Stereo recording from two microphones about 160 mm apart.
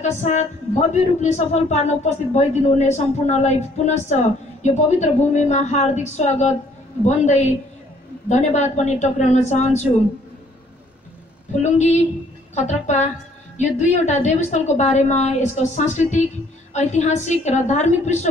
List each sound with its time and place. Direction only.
0.0 s a man's voice: 45° left (ahead or behind)
11.6 s a man's voice: 45° left (ahead or behind)